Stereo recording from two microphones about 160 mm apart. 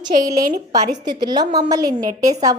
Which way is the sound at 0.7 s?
25° right (ahead or behind).